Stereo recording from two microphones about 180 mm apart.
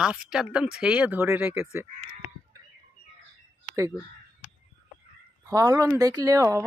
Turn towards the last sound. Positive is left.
turn(degrees=-15)  # may be behind; listen again after turning